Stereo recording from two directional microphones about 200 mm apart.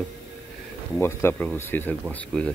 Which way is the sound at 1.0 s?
10° left (ahead or behind).